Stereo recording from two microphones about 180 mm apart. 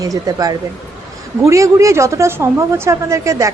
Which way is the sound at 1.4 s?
15° right (ahead or behind).